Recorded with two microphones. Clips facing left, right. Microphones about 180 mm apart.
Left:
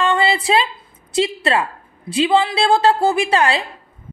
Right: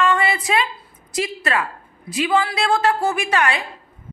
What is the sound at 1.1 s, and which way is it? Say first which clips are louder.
A woman's voice: left 5 dB; 30° left (ahead or behind).